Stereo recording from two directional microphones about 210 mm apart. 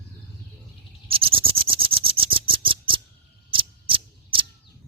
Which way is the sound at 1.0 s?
25° right (ahead or behind).